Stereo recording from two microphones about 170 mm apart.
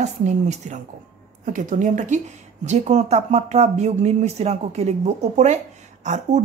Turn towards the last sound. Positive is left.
turn(degrees=-45)  # may be behind; listen again after turning